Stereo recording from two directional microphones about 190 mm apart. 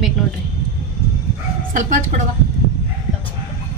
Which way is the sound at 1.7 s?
40° right (ahead or behind).